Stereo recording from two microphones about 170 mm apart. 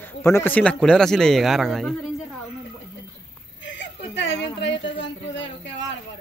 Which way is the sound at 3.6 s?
90° left.